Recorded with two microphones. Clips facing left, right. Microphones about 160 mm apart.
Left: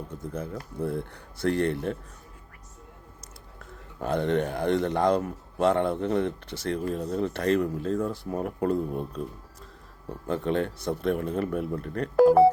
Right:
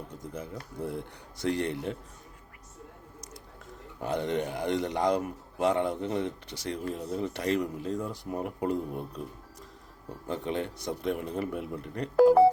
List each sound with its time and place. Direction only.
0.1 s a man's voice: 15° right (ahead or behind)
4.0 s a man's voice: 15° right (ahead or behind)
10.2 s a man's voice: 15° right (ahead or behind)
12.1 s speech: 65° left (ahead or behind)